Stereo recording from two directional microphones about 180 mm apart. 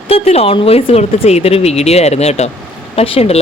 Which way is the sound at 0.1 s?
35° left (ahead or behind).